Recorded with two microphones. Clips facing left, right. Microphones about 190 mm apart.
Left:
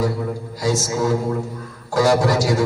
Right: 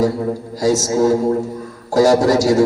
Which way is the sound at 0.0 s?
40° right (ahead or behind).